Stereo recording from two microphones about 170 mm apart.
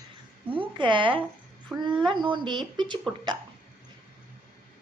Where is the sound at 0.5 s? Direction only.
30° right (ahead or behind).